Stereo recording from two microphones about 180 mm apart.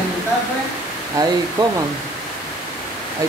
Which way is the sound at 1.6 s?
25° right (ahead or behind).